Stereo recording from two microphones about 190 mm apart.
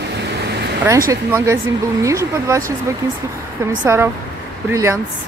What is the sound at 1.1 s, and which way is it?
Speech, 15° right (ahead or behind).